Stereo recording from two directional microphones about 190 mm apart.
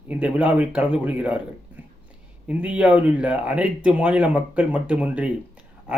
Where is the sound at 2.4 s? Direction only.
5° right (ahead or behind).